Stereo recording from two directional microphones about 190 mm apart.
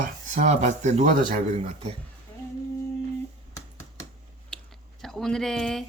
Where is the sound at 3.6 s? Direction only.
15° left (ahead or behind).